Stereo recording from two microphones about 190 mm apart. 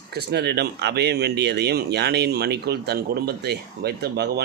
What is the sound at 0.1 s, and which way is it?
Speech, 55° right (ahead or behind).